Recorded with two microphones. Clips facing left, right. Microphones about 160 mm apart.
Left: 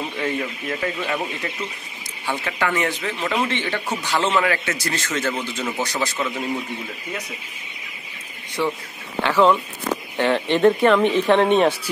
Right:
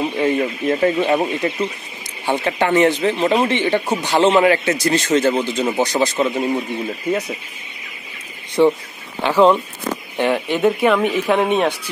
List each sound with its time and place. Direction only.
0.2 s speech: 30° right (ahead or behind)
3.9 s speech: 30° right (ahead or behind)
8.6 s speech: 25° right (ahead or behind)
9.2 s speech: 15° right (ahead or behind)